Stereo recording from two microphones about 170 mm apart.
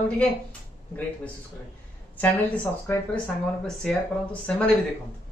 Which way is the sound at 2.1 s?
10° left (ahead or behind).